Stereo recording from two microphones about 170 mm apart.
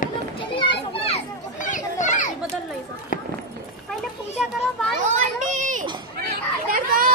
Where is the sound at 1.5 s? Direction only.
50° left (ahead or behind).